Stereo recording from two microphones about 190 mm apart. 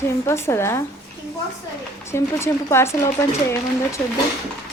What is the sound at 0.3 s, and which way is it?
Speech, 15° left (ahead or behind).